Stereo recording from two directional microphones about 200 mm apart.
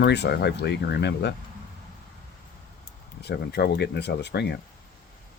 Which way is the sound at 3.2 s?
55° left (ahead or behind).